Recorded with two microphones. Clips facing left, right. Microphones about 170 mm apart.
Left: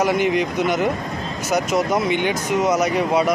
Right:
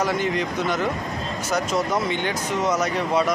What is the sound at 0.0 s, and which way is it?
Speech, 15° left (ahead or behind).